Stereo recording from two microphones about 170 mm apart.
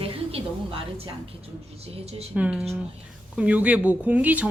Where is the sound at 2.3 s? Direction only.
5° right (ahead or behind).